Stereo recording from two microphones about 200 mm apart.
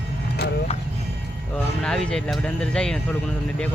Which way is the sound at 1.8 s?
5° left (ahead or behind).